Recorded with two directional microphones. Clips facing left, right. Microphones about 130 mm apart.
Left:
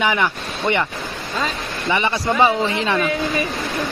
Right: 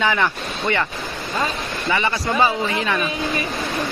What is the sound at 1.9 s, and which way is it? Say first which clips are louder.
Speech: left 2 dB; 20° left (ahead or behind).